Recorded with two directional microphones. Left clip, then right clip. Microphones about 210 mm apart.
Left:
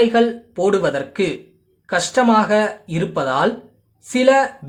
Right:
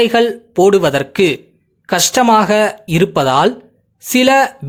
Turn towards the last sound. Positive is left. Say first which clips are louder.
# right 3 dB
turn(degrees=-45)  # may be behind; listen again after turning